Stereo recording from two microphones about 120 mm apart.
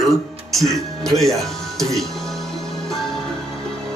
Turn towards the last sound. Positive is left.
turn(degrees=5)  # may be behind; listen again after turning